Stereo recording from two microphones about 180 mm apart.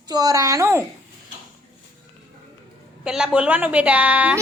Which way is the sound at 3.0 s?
5° right (ahead or behind).